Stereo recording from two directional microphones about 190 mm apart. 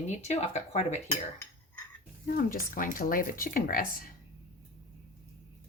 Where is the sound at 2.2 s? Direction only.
45° left (ahead or behind).